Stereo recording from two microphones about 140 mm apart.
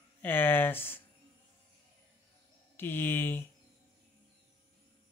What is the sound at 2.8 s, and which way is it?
Speech, 15° left (ahead or behind).